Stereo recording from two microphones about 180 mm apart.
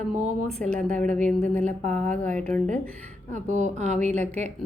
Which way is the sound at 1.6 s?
45° right (ahead or behind).